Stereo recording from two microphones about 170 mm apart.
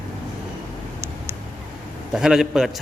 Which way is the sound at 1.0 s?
15° right (ahead or behind).